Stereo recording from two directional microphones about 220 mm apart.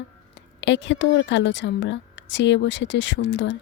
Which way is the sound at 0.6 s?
55° left (ahead or behind).